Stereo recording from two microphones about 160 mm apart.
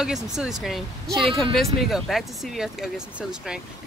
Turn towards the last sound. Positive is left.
turn(degrees=-5)  # may be behind; listen again after turning